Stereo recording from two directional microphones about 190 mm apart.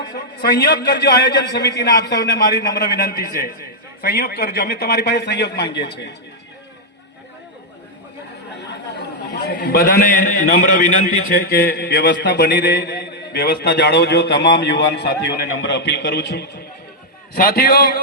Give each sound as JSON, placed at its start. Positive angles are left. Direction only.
{"t": 0.4, "sound": "a man's voice", "side_deg": 55}
{"t": 9.5, "sound": "a man's voice", "side_deg": 55}